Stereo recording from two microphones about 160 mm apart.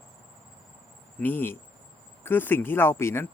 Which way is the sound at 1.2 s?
10° left (ahead or behind).